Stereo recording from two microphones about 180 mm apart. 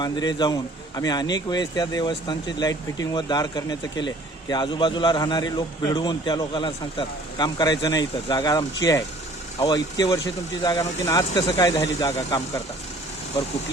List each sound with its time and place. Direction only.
0.0 s a man's voice: 25° left (ahead or behind)